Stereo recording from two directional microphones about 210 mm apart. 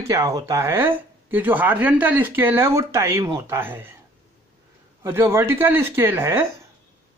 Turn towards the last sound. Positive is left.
turn(degrees=-15)  # may be behind; listen again after turning